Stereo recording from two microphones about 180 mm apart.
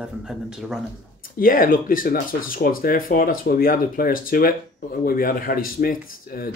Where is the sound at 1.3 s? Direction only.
50° left (ahead or behind).